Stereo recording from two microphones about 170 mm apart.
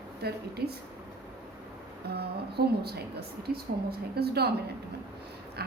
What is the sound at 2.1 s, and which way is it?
Speech, 70° right (ahead or behind).